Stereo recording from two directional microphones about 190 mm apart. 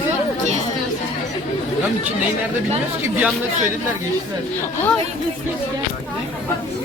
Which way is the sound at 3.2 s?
10° right (ahead or behind).